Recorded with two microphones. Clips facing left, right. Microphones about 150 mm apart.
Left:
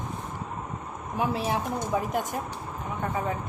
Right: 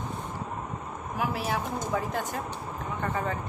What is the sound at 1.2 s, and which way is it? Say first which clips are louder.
A woman's voice: left 3 dB; 20° left (ahead or behind).